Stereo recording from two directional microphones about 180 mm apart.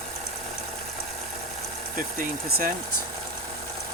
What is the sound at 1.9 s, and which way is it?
Speech, 50° right (ahead or behind).